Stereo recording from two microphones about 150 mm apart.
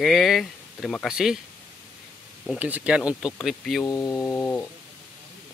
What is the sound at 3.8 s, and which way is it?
Speech, 25° left (ahead or behind).